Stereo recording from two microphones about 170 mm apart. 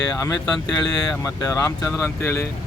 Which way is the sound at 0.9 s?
5° left (ahead or behind).